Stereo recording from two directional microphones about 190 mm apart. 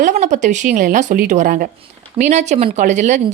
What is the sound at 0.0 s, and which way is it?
Speech, 40° right (ahead or behind).